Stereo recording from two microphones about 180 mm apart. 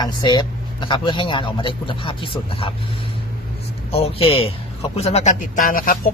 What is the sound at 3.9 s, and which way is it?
Speech, 35° left (ahead or behind).